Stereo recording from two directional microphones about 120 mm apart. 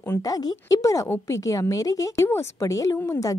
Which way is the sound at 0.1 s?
30° left (ahead or behind).